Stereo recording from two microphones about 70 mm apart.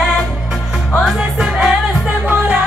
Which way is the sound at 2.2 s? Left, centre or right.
Right.